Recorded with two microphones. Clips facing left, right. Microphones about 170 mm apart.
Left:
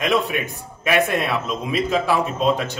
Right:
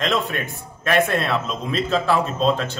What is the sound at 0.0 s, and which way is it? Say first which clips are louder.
Speech: left 2 dB; 10° left (ahead or behind).